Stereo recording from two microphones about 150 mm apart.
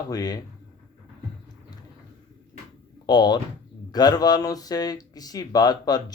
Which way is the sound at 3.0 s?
30° left (ahead or behind).